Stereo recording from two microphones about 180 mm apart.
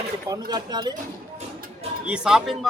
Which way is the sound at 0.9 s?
40° right (ahead or behind).